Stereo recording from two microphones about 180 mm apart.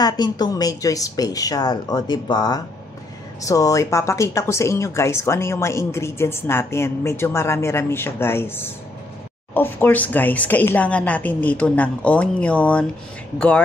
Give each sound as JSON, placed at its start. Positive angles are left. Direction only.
{"t": 0.0, "sound": "speech", "side_deg": 20}